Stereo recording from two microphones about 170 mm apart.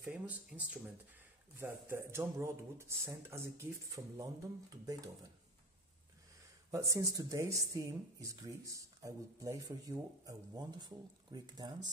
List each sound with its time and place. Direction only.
0.0 s speech: 5° right (ahead or behind)
6.7 s speech: 20° right (ahead or behind)